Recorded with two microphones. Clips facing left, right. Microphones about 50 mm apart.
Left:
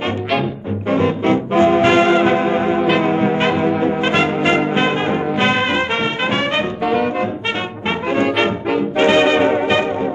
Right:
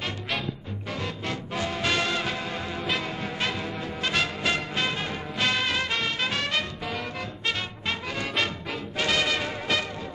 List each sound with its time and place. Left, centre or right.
0.8 s music: left
8.2 s brass instrument: left